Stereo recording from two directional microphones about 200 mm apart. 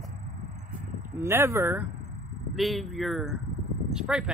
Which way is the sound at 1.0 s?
10° right (ahead or behind).